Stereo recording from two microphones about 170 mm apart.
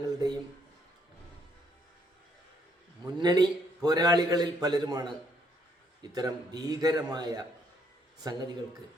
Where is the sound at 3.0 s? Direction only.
25° right (ahead or behind).